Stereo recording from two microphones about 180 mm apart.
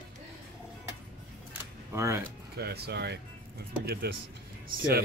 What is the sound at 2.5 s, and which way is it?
Speech, 60° right (ahead or behind).